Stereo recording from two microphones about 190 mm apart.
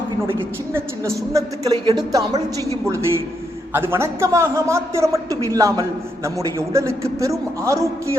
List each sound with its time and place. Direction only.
0.7 s a woman's voice: 15° right (ahead or behind)